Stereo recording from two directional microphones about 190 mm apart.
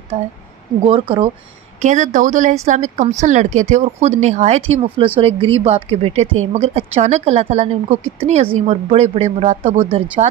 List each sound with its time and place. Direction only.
0.1 s speech: 35° right (ahead or behind)